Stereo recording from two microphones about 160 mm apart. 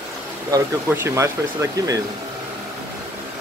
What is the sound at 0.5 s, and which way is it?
Speech, 15° right (ahead or behind).